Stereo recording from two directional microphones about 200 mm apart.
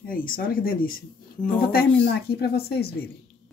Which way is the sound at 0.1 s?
45° left (ahead or behind).